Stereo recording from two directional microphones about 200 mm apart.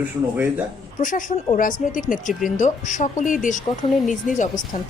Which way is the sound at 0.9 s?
40° left (ahead or behind).